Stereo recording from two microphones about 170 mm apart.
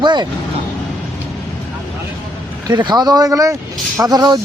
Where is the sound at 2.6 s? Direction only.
25° right (ahead or behind).